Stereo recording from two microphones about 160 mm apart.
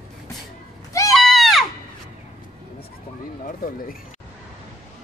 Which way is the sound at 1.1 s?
Centre (ahead or behind).